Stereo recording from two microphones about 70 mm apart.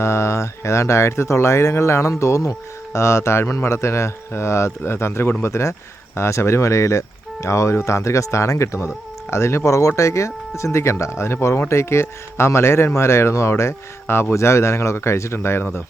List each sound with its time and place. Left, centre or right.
0.0 s speech: left